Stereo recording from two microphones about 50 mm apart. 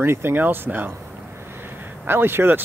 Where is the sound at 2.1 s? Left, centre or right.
Right.